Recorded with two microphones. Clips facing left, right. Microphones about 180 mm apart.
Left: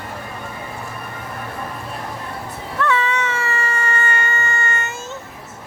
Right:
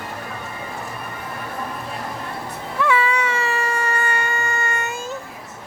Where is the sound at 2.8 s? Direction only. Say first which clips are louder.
Even; 10° right (ahead or behind).